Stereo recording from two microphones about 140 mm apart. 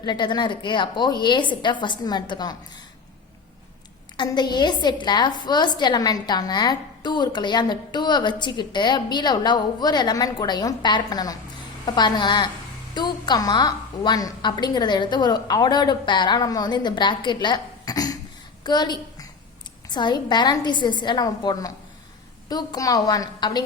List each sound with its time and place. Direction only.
0.0 s a woman's voice: 35° left (ahead or behind)
4.2 s a woman's voice: 30° left (ahead or behind)